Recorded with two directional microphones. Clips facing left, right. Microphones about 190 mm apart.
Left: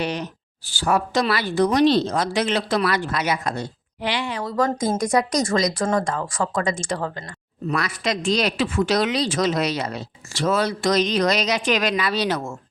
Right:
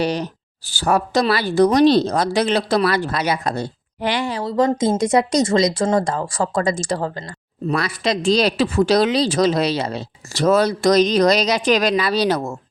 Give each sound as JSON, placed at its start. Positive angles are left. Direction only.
{"t": 0.0, "sound": "speech", "side_deg": -35}
{"t": 4.0, "sound": "speech", "side_deg": -45}